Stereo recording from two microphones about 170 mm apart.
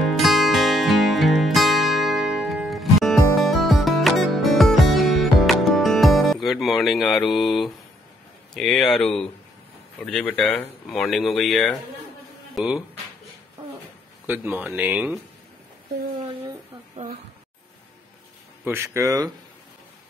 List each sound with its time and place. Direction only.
0.0 s music: centre (ahead or behind)
8.5 s speech: centre (ahead or behind)
14.2 s speech: 10° right (ahead or behind)
18.6 s speech: 15° right (ahead or behind)